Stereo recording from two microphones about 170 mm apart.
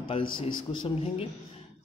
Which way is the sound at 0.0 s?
30° left (ahead or behind).